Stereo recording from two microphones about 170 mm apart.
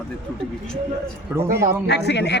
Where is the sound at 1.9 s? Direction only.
85° left.